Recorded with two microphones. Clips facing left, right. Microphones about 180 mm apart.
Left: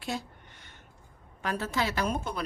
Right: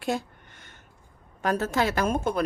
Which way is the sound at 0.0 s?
50° right (ahead or behind).